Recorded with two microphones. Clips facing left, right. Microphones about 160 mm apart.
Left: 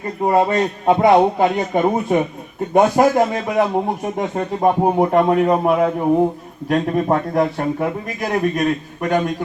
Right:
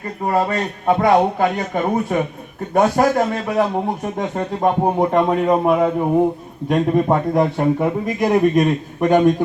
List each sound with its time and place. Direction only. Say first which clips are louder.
0.3 s a man's voice: left 3 dB; 20° left (ahead or behind); by 7.7 s 5° right (ahead or behind)
7.8 s a man's voice: right 4 dB; 20° right (ahead or behind)